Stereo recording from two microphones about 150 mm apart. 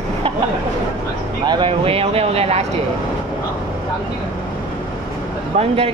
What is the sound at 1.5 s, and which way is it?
Speech, 35° right (ahead or behind).